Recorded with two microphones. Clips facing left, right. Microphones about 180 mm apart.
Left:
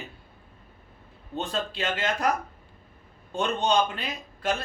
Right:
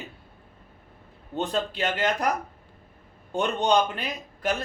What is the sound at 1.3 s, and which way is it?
Speech, 15° right (ahead or behind).